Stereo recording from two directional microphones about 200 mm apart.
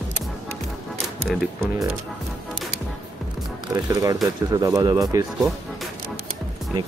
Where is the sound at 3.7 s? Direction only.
15° right (ahead or behind).